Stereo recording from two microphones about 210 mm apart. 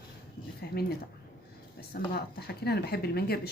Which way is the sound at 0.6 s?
50° left (ahead or behind).